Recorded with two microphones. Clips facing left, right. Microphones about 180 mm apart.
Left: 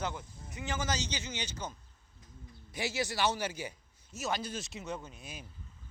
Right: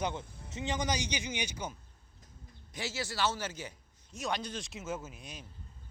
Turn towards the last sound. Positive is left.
turn(degrees=-5)  # may be behind; listen again after turning